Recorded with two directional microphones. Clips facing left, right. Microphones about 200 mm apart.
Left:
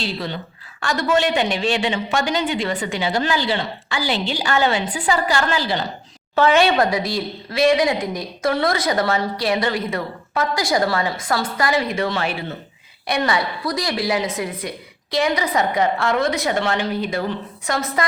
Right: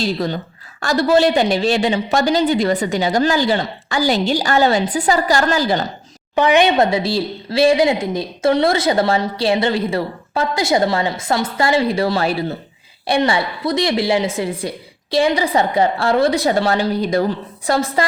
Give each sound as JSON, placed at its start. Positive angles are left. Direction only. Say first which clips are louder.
{"t": 0.0, "sound": "a woman's voice", "louder": "right 6 dB", "side_deg": -40}
{"t": 6.3, "sound": "a woman's voice", "louder": "right 2 dB", "side_deg": -15}